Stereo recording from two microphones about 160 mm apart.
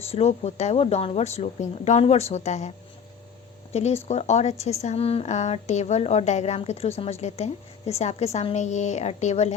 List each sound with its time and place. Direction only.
0.0 s speech: 40° left (ahead or behind)